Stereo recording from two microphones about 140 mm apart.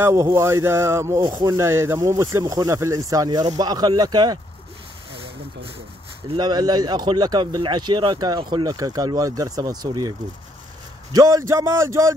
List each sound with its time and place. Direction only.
0.0 s speech: 20° right (ahead or behind)
5.1 s a sound: 40° right (ahead or behind)
6.3 s speech: 30° right (ahead or behind)
11.1 s speech: 25° right (ahead or behind)